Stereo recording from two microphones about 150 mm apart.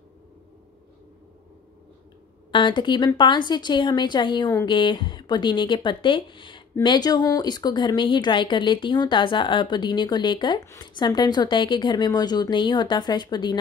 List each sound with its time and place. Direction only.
2.5 s a woman's voice: 30° left (ahead or behind)